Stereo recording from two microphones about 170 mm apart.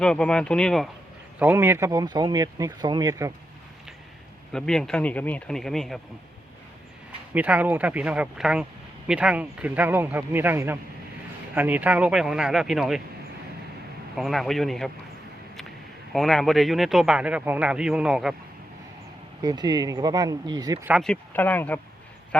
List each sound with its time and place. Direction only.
0.0 s speech: 5° left (ahead or behind)
1.4 s speech: 10° right (ahead or behind)
4.5 s speech: 5° left (ahead or behind)
7.3 s a man's voice: 10° right (ahead or behind)
14.2 s speech: centre (ahead or behind)
16.1 s speech: centre (ahead or behind)
19.4 s speech: 25° right (ahead or behind)
21.0 s speech: 5° left (ahead or behind)